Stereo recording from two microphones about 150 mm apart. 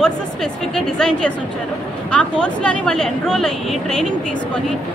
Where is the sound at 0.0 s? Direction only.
5° left (ahead or behind).